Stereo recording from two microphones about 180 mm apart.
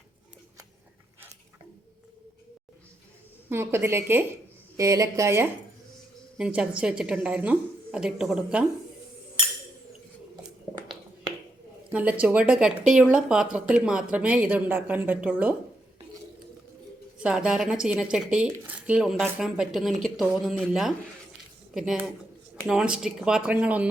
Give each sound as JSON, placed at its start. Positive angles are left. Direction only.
{"t": 3.5, "sound": "a woman's voice", "side_deg": -15}
{"t": 11.9, "sound": "speech", "side_deg": -10}
{"t": 17.2, "sound": "a woman's voice", "side_deg": -5}